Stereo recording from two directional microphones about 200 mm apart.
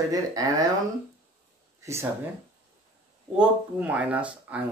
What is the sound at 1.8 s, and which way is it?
Speech, 15° right (ahead or behind).